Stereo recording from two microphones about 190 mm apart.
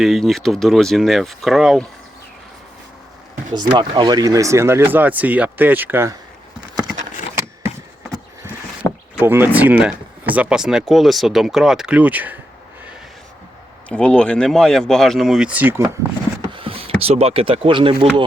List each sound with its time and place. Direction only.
0.0 s speech: centre (ahead or behind)
3.5 s speech: 25° right (ahead or behind)
9.1 s speech: 10° right (ahead or behind)
13.8 s speech: 5° left (ahead or behind); by 15.8 s 10° right (ahead or behind)
16.5 s speech: 30° right (ahead or behind)